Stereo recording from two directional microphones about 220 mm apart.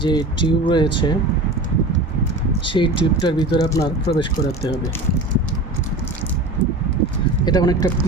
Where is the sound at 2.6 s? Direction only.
20° left (ahead or behind).